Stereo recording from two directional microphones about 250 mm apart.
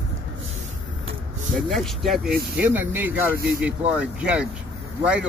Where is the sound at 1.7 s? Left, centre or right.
Centre.